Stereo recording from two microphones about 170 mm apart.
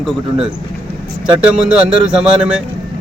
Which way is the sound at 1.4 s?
5° right (ahead or behind).